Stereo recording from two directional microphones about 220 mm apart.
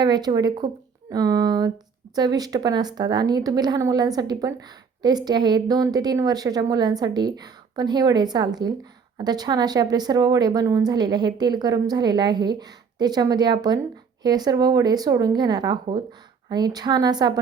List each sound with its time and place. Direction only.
0.0 s a woman's voice: 20° right (ahead or behind)